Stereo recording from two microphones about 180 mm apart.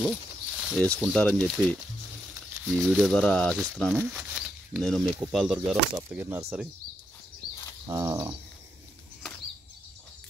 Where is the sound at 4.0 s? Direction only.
10° right (ahead or behind).